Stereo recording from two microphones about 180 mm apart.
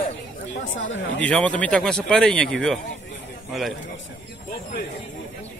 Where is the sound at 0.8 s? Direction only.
90° left.